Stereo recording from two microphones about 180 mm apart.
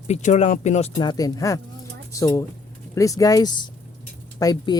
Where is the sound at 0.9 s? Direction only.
20° left (ahead or behind).